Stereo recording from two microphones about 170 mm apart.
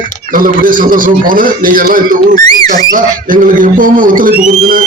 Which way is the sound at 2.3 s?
25° left (ahead or behind).